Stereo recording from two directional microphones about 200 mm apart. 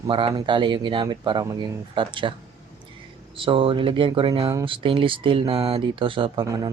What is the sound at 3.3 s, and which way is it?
Speech, 25° right (ahead or behind).